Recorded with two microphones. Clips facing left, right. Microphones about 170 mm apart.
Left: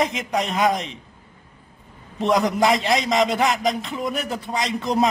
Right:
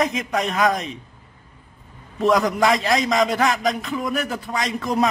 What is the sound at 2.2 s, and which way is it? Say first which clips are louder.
Speech: right 1 dB; 30° left (ahead or behind).